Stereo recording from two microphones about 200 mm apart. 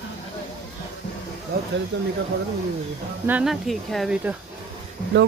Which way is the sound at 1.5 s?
50° right (ahead or behind).